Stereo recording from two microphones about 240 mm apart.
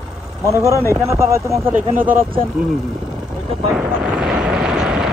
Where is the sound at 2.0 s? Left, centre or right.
Right.